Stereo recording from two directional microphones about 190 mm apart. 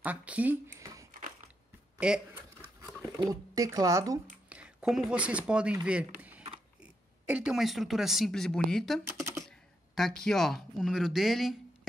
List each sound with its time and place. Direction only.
0.0 s speech: 5° right (ahead or behind)
2.0 s speech: 5° right (ahead or behind)
3.2 s speech: 20° right (ahead or behind)
4.5 s speech: 5° right (ahead or behind)
5.9 s a sound: 5° right (ahead or behind)
6.8 s speech: 5° right (ahead or behind)
9.0 s speech: 15° right (ahead or behind)
9.3 s speech: centre (ahead or behind)